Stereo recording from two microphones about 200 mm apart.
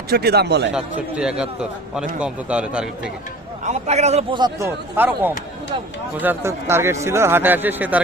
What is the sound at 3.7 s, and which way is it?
A man's voice, 35° right (ahead or behind).